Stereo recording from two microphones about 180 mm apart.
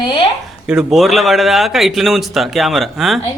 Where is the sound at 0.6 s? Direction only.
5° right (ahead or behind).